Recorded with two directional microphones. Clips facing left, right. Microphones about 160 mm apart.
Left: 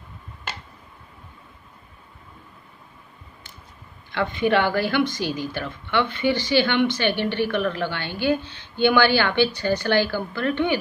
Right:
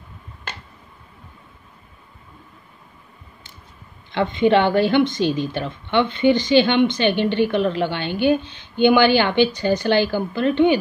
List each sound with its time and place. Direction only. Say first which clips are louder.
4.1 s a woman's voice: right 4 dB; 20° right (ahead or behind)